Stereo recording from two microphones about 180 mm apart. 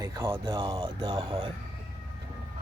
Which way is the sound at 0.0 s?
15° right (ahead or behind).